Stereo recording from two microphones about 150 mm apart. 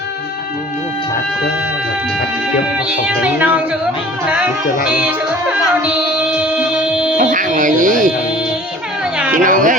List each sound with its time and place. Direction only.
3.2 s speech: 10° right (ahead or behind)
4.9 s music: 5° right (ahead or behind)
7.2 s speech: 60° right (ahead or behind)
9.3 s speech: 60° right (ahead or behind)